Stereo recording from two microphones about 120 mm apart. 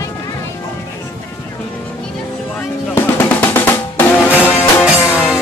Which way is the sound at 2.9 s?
15° left (ahead or behind).